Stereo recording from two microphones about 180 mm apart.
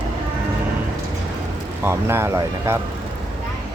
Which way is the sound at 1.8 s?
15° right (ahead or behind).